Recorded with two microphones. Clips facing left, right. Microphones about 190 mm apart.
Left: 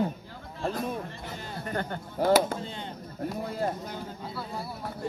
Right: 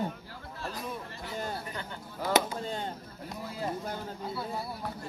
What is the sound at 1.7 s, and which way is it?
Speech, 55° left (ahead or behind).